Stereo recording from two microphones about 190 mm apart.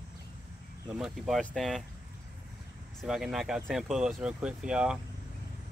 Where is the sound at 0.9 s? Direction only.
5° right (ahead or behind).